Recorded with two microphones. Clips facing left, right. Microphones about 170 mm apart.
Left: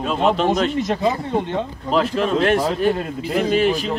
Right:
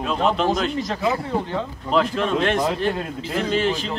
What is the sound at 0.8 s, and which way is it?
Speech, 20° left (ahead or behind).